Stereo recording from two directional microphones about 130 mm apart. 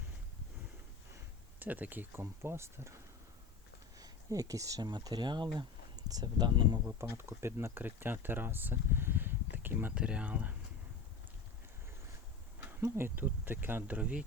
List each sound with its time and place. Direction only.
1.1 s speech: 15° right (ahead or behind); by 6.7 s 35° right (ahead or behind)
6.8 s speech: 20° right (ahead or behind)
12.8 s speech: 15° right (ahead or behind)